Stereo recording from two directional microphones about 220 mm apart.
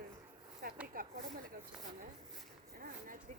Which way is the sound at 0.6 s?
45° right (ahead or behind).